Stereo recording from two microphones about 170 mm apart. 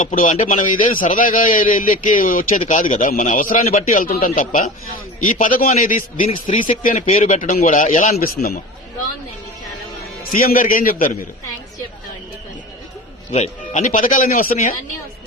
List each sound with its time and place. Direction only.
0.0 s a man's voice: 50° left (ahead or behind)
10.3 s a man's voice: 55° left (ahead or behind)
13.3 s a man's voice: 40° left (ahead or behind)